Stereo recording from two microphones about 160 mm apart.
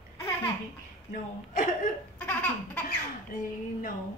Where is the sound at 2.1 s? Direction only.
10° left (ahead or behind).